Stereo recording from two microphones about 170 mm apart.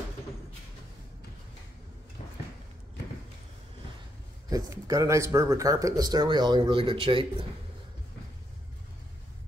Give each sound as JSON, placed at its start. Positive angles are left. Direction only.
{"t": 4.5, "sound": "speech", "side_deg": -20}